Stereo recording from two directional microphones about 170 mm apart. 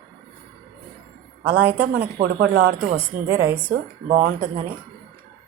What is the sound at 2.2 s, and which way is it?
A woman's voice, 65° right (ahead or behind).